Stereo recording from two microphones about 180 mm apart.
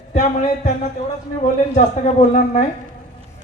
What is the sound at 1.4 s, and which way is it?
A man's voice, 40° left (ahead or behind).